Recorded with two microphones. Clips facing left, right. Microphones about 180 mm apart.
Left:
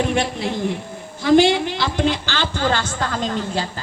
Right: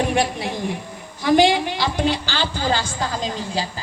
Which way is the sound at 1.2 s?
15° right (ahead or behind).